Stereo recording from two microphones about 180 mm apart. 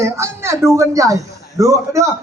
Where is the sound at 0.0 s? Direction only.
15° right (ahead or behind).